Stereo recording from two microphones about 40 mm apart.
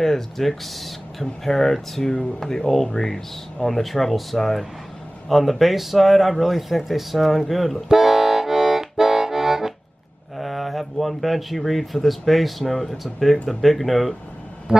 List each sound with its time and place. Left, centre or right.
0.0 s speech: centre
7.9 s accordion: centre
10.3 s speech: centre
14.7 s a sound: centre